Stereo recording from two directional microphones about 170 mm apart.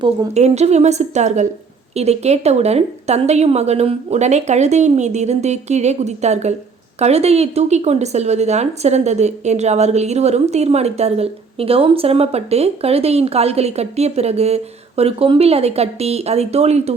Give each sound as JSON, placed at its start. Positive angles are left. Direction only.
{"t": 0.3, "sound": "a woman's voice", "side_deg": -40}